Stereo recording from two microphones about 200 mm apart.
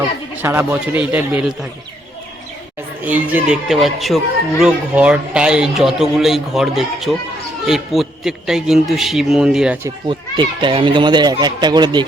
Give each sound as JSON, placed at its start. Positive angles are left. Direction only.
{"t": 0.4, "sound": "a man's voice", "side_deg": -10}
{"t": 3.0, "sound": "speech", "side_deg": -10}
{"t": 10.1, "sound": "speech", "side_deg": -25}